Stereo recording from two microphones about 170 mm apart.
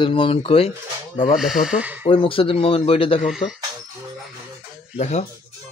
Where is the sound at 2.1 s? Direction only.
30° left (ahead or behind).